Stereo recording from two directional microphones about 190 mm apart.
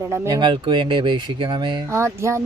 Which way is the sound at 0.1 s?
20° right (ahead or behind).